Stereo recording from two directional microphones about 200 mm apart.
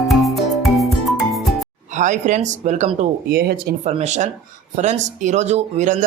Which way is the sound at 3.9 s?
35° right (ahead or behind).